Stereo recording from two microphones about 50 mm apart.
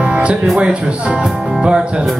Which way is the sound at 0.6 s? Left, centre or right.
Right.